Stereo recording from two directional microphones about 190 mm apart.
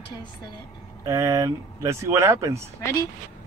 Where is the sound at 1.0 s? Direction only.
15° right (ahead or behind).